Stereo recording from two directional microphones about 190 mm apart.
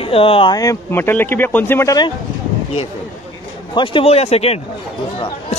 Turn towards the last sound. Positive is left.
turn(degrees=30)  # may be behind; listen again after turning